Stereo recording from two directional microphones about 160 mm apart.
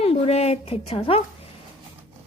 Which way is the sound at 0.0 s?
40° left (ahead or behind).